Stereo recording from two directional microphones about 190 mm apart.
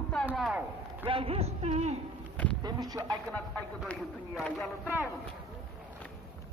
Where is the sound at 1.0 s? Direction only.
30° right (ahead or behind).